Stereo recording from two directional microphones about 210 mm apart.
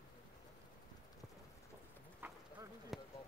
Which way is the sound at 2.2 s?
10° right (ahead or behind).